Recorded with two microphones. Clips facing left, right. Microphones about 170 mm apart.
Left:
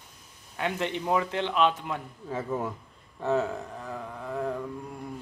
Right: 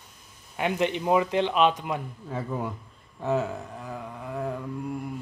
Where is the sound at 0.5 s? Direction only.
15° right (ahead or behind).